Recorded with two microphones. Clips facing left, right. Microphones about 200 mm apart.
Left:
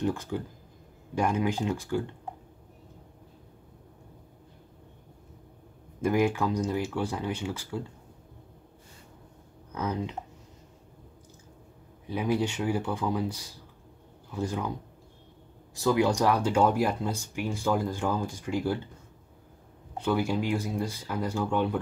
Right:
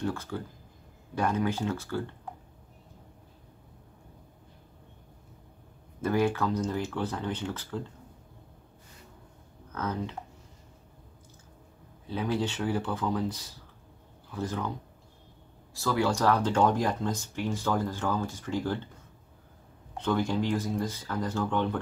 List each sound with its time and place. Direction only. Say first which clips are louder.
0.0 s speech: left 3 dB; 15° left (ahead or behind)
5.9 s speech: left 1 dB; 15° left (ahead or behind)
9.7 s speech: left 2 dB; 15° left (ahead or behind)
12.1 s speech: left 2 dB; 15° left (ahead or behind)
15.7 s speech: left 3 dB; 15° left (ahead or behind)
20.0 s speech: left 1 dB; 10° left (ahead or behind)